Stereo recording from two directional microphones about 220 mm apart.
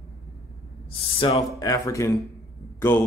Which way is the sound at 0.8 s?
25° left (ahead or behind).